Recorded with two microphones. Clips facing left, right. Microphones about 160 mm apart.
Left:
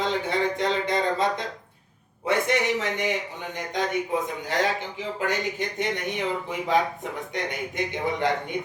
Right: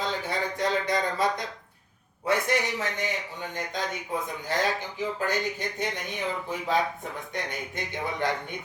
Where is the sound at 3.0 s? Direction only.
20° left (ahead or behind).